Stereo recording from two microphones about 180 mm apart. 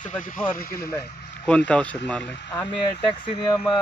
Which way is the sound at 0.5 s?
55° left (ahead or behind).